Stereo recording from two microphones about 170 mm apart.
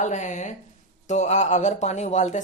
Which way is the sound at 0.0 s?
45° left (ahead or behind).